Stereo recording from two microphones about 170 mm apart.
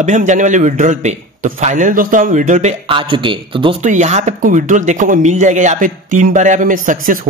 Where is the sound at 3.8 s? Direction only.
45° right (ahead or behind).